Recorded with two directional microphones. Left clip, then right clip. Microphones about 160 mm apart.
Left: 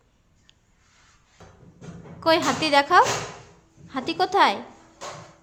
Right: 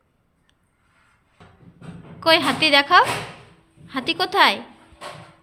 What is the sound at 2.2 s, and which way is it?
A woman's voice, 10° left (ahead or behind).